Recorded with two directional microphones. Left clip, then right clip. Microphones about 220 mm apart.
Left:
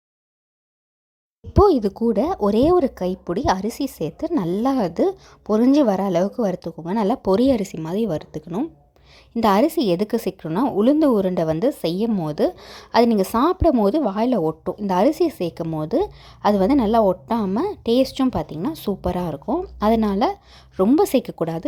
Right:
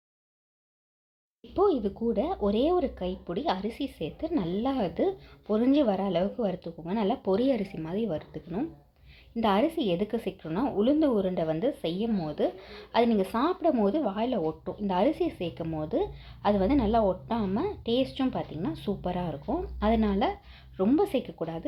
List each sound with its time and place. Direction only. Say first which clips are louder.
1.5 s a woman's voice: left 10 dB; 40° left (ahead or behind)